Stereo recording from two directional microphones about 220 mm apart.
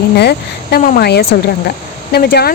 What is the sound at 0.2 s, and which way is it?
Speech, 45° left (ahead or behind).